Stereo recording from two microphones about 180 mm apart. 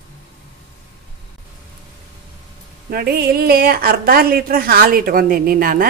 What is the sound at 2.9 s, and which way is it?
A woman's voice, 60° right (ahead or behind).